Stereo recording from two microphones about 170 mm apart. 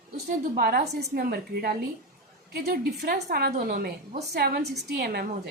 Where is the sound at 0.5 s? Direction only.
65° right (ahead or behind).